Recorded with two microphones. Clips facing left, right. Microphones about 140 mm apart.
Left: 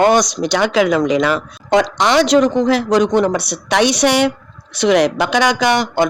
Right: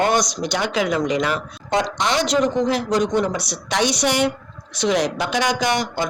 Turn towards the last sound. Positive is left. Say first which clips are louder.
# left 6 dB
turn(degrees=70)  # may be behind; listen again after turning